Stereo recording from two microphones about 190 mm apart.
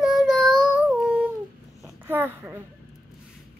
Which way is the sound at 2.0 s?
10° right (ahead or behind).